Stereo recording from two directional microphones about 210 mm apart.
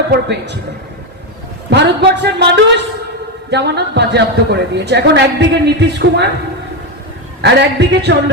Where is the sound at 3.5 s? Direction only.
55° right (ahead or behind).